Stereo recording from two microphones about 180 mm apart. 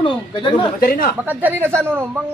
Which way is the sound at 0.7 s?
50° left (ahead or behind).